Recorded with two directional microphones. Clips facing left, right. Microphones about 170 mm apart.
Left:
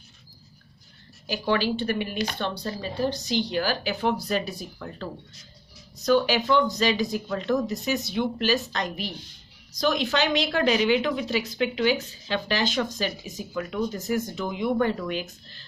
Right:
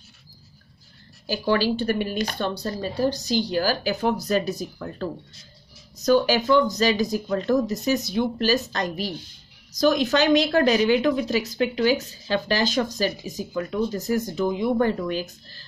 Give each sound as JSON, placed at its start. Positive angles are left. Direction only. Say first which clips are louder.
{"t": 1.2, "sound": "a woman's voice", "louder": "right 3 dB", "side_deg": -40}